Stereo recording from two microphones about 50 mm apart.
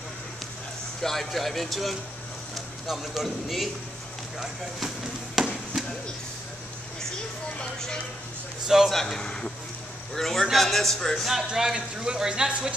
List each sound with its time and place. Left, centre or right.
1.0 s speech: centre
7.0 s a sound: centre
8.6 s a man's voice: centre
8.9 s a man's voice: centre
11.2 s speech: centre